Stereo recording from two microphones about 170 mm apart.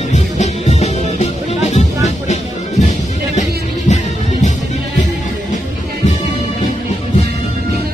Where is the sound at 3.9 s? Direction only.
45° left (ahead or behind).